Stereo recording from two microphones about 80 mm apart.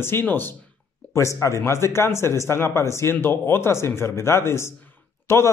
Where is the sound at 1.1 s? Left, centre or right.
Left.